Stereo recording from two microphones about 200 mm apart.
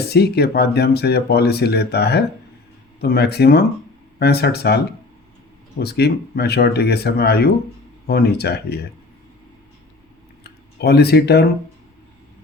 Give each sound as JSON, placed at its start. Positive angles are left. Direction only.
{"t": 0.1, "sound": "speech", "side_deg": 55}
{"t": 5.8, "sound": "speech", "side_deg": 55}
{"t": 10.4, "sound": "speech", "side_deg": 55}